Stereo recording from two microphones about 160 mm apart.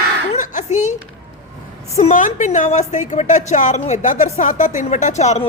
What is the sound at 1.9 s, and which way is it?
A woman's voice, 45° left (ahead or behind).